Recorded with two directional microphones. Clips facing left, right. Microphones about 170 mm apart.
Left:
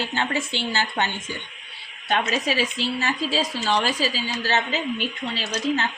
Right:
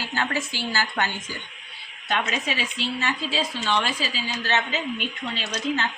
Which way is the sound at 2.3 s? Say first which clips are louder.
Left 5 dB; 35° left (ahead or behind).